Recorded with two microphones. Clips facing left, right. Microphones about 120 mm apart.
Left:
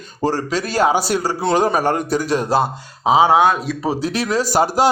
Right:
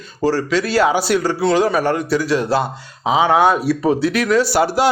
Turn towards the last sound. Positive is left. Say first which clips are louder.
# right 1 dB
turn(degrees=40)  # may be behind; listen again after turning